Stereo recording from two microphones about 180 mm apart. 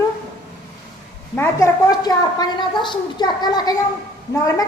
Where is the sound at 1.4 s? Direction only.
15° left (ahead or behind).